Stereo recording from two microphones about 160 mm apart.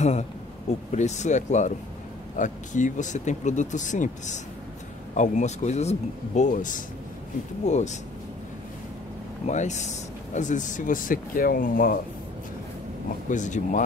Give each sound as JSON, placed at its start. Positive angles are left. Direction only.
{"t": 0.0, "sound": "speech", "side_deg": 45}
{"t": 9.5, "sound": "speech", "side_deg": 45}
{"t": 13.3, "sound": "speech", "side_deg": 50}